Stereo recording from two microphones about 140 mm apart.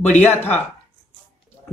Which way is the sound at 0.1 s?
15° left (ahead or behind).